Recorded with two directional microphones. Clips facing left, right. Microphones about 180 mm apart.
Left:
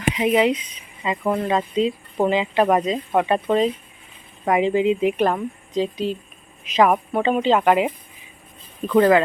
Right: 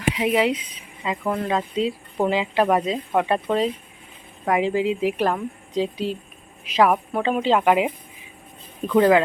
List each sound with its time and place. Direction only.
0.1 s a woman's voice: 5° right (ahead or behind)